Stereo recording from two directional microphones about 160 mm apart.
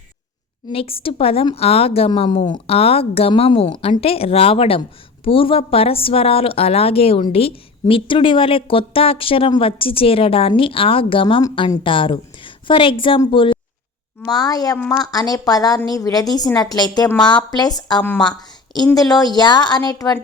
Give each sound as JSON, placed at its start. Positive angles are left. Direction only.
{"t": 0.7, "sound": "a woman's voice", "side_deg": 35}
{"t": 18.0, "sound": "speech", "side_deg": 10}
{"t": 18.9, "sound": "a woman's voice", "side_deg": 25}